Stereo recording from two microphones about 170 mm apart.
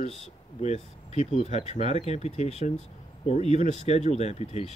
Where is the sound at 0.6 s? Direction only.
40° left (ahead or behind).